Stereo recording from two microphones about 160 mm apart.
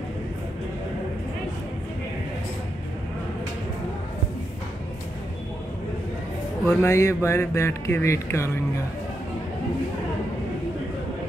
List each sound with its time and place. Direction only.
6.6 s music: 15° left (ahead or behind)